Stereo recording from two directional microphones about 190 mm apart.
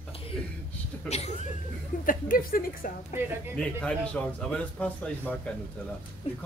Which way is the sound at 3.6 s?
5° left (ahead or behind).